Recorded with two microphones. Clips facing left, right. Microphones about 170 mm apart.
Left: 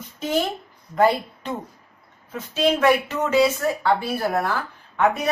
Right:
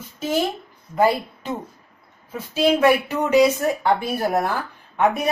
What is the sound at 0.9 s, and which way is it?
A woman's voice, 5° right (ahead or behind).